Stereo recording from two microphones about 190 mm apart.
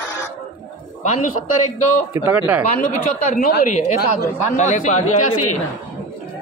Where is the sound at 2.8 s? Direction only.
40° left (ahead or behind).